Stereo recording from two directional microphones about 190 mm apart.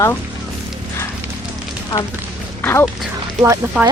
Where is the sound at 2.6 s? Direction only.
10° left (ahead or behind).